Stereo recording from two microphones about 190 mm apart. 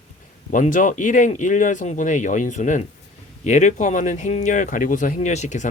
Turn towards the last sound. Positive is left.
turn(degrees=40)  # may be behind; listen again after turning